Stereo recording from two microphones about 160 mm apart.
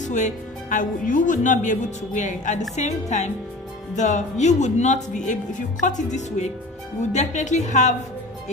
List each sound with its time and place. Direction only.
0.0 s speech: 50° left (ahead or behind)